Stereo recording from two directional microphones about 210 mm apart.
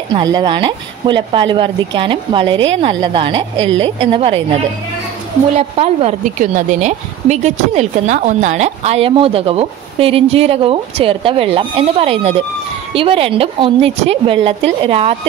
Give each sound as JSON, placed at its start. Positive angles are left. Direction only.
{"t": 0.1, "sound": "a woman's voice", "side_deg": -20}
{"t": 3.5, "sound": "a woman's voice", "side_deg": -65}
{"t": 3.8, "sound": "a woman's voice", "side_deg": -25}
{"t": 5.6, "sound": "a woman's voice", "side_deg": -30}